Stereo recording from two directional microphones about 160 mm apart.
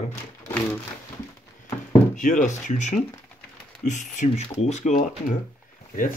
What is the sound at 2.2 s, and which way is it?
Speech, 55° left (ahead or behind).